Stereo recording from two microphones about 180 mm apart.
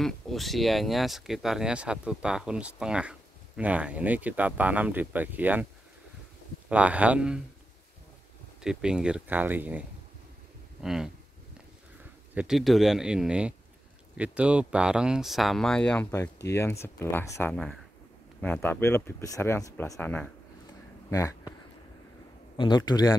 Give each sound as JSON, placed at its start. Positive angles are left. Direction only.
{"t": 0.0, "sound": "speech", "side_deg": 0}
{"t": 6.7, "sound": "speech", "side_deg": -10}
{"t": 8.6, "sound": "speech", "side_deg": -5}
{"t": 12.4, "sound": "speech", "side_deg": 0}
{"t": 22.6, "sound": "a man's voice", "side_deg": 25}